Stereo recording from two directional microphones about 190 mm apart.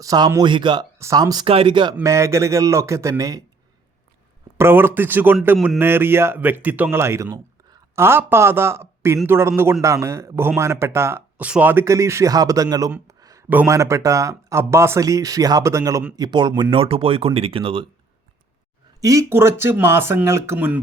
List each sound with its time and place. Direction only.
0.0 s speech: 20° right (ahead or behind)
2.0 s speech: 15° right (ahead or behind)
4.5 s speech: 10° right (ahead or behind)
5.5 s speech: centre (ahead or behind)
5.8 s speech: 10° right (ahead or behind); by 17.8 s 30° right (ahead or behind)
18.9 s speech: 15° right (ahead or behind)